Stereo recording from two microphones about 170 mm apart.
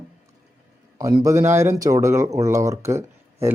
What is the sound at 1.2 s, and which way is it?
Speech, 15° right (ahead or behind).